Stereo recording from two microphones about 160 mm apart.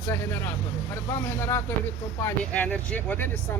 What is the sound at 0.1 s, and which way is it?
Speech, 15° left (ahead or behind).